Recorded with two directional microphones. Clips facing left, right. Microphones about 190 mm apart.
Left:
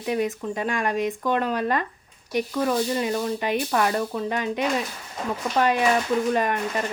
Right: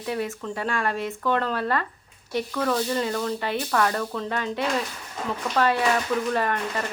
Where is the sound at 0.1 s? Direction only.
15° left (ahead or behind).